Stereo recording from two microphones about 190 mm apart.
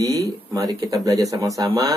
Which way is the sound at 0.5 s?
20° right (ahead or behind).